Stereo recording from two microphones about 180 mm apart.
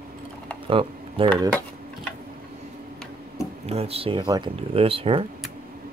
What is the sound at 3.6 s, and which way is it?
Speech, 35° right (ahead or behind).